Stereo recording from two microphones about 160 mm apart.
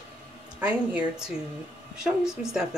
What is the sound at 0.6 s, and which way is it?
A woman's voice, 5° right (ahead or behind).